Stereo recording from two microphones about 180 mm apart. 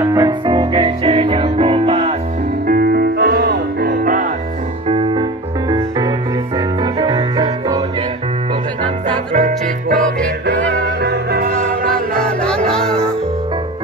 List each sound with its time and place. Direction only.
0.0 s music: 20° right (ahead or behind)
2.6 s music: 55° right (ahead or behind)
4.8 s music: 30° right (ahead or behind)
5.7 s music: 20° right (ahead or behind)
8.8 s music: 30° right (ahead or behind)
9.4 s music: 50° right (ahead or behind)
10.7 s music: 70° right (ahead or behind); by 12.2 s 50° right (ahead or behind)